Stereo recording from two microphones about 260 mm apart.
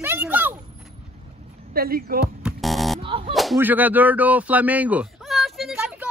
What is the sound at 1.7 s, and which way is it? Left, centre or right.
Speech, right.